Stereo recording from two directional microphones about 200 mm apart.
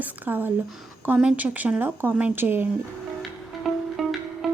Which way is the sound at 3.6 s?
Centre (ahead or behind).